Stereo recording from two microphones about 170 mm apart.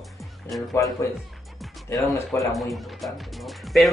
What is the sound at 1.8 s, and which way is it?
Speech, 20° left (ahead or behind).